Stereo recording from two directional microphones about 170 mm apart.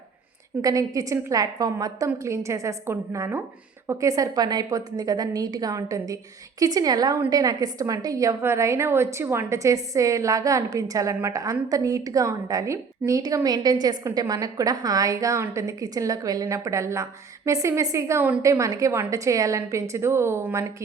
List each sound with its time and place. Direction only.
0.6 s a woman's voice: 20° right (ahead or behind)